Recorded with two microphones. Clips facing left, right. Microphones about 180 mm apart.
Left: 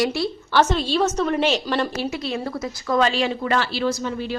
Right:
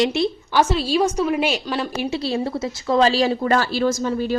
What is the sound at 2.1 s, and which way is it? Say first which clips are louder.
A woman's voice: right 4 dB; 30° right (ahead or behind).